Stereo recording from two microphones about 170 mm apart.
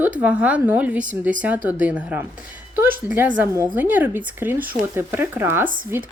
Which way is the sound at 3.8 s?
10° right (ahead or behind).